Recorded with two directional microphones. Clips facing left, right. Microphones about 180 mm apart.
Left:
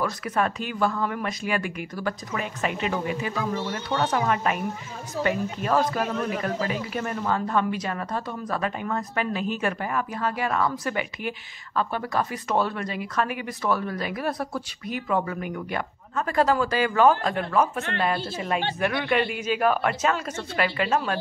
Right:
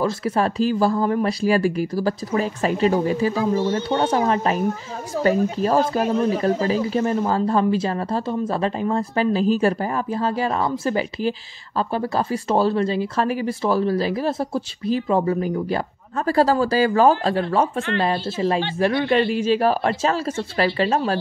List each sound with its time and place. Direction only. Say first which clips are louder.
0.0 s speech: right 5 dB; 30° right (ahead or behind)